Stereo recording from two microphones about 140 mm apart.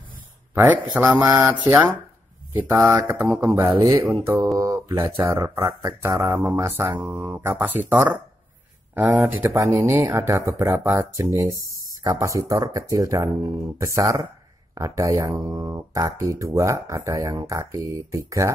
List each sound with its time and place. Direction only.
0.9 s speech: 10° right (ahead or behind)